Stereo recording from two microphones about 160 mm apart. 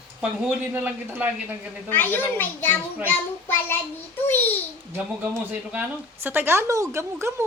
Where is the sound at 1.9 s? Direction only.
10° left (ahead or behind).